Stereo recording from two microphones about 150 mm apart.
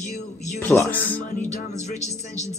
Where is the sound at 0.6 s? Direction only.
15° left (ahead or behind).